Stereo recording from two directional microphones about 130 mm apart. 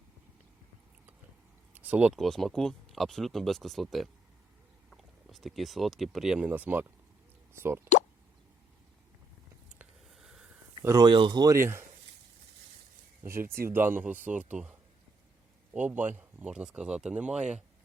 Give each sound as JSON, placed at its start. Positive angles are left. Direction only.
{"t": 1.7, "sound": "a sound", "side_deg": -10}
{"t": 2.1, "sound": "speech", "side_deg": 0}
{"t": 10.1, "sound": "a sound", "side_deg": -5}
{"t": 10.8, "sound": "speech", "side_deg": -25}
{"t": 11.5, "sound": "speech", "side_deg": -20}
{"t": 13.2, "sound": "speech", "side_deg": -20}